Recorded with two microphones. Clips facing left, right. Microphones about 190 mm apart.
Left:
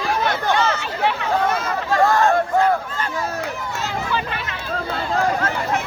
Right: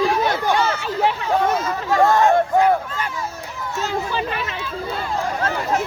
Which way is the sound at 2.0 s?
20° right (ahead or behind).